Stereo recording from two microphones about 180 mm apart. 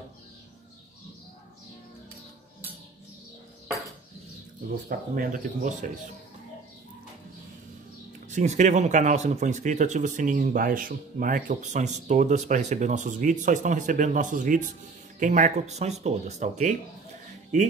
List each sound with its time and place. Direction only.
4.8 s speech: 50° right (ahead or behind)
8.3 s speech: 40° right (ahead or behind)